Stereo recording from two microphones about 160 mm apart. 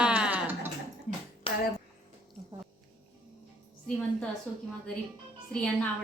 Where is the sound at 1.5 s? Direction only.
35° left (ahead or behind).